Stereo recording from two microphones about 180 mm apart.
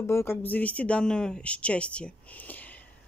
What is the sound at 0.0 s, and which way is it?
Speech, 15° left (ahead or behind).